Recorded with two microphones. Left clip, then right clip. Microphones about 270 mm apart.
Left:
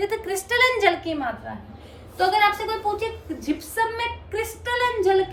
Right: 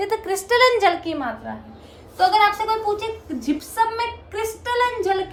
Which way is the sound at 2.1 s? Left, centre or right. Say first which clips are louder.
Right 3 dB; centre.